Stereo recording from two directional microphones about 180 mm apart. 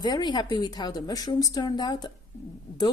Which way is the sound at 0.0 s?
25° left (ahead or behind).